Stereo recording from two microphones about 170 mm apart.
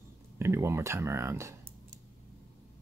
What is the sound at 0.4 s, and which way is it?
Speech, 15° right (ahead or behind).